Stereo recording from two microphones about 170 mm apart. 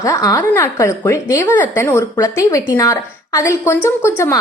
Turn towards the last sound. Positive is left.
turn(degrees=15)  # may be behind; listen again after turning